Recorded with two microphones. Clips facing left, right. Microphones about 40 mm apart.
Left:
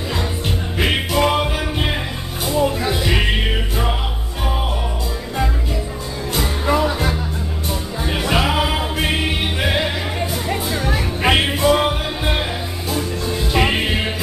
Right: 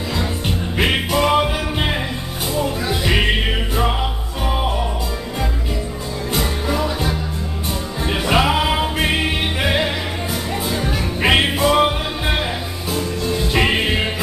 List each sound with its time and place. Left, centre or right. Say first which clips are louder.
0.7 s music: even; centre
6.6 s music: left 3 dB; centre
8.0 s music: right 2 dB; centre
13.5 s music: even; centre